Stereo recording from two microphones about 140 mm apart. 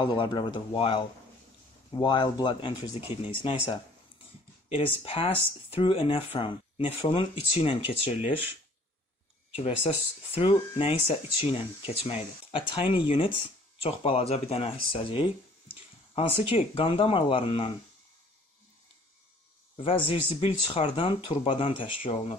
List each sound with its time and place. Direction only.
0.0 s speech: 30° left (ahead or behind)
10.3 s speech: 40° left (ahead or behind)
19.8 s speech: 40° left (ahead or behind)